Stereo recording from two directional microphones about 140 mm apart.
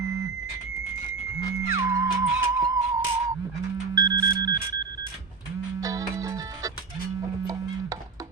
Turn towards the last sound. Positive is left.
turn(degrees=-25)  # may be behind; listen again after turning